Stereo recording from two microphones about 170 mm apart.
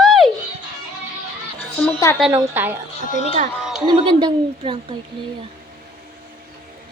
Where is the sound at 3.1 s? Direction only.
40° left (ahead or behind).